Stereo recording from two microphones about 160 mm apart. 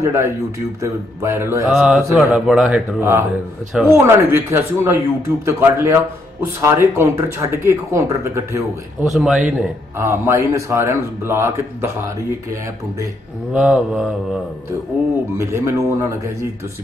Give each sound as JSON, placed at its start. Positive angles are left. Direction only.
{"t": 0.0, "sound": "speech", "side_deg": -15}
{"t": 1.7, "sound": "a man's voice", "side_deg": 0}
{"t": 3.0, "sound": "speech", "side_deg": -15}
{"t": 9.0, "sound": "a man's voice", "side_deg": 0}
{"t": 9.9, "sound": "speech", "side_deg": -15}
{"t": 13.5, "sound": "speech", "side_deg": -5}
{"t": 15.3, "sound": "speech", "side_deg": -15}